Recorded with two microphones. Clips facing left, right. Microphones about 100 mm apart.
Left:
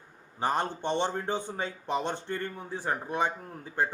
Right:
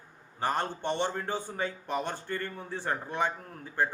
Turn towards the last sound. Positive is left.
turn(degrees=20)  # may be behind; listen again after turning